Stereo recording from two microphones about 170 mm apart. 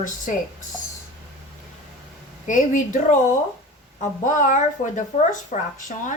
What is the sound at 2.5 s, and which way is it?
Speech, 50° left (ahead or behind).